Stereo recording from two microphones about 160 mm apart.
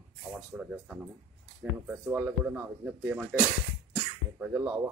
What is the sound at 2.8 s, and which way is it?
Speech, 5° right (ahead or behind).